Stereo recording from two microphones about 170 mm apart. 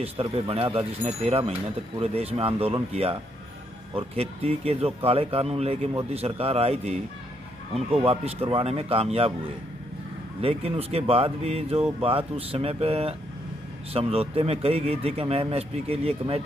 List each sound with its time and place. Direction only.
0.0 s speech: 35° right (ahead or behind)
10.4 s speech: 35° right (ahead or behind)